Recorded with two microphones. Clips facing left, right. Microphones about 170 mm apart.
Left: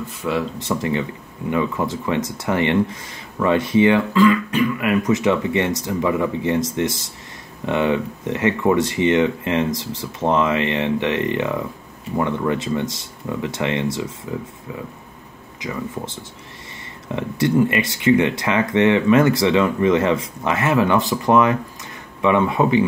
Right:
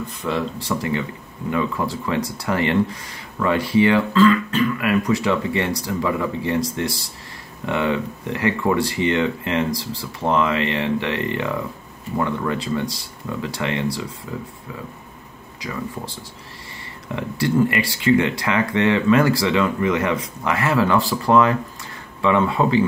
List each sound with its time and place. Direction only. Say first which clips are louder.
0.2 s speech: left 2 dB; 10° left (ahead or behind)
0.6 s speech: left 2 dB; 25° left (ahead or behind)
15.6 s speech: left 2 dB; 20° left (ahead or behind)
17.1 s speech: left 2 dB; 20° left (ahead or behind)